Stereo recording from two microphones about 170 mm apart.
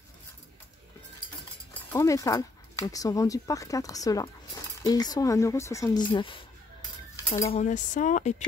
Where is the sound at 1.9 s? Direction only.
20° left (ahead or behind).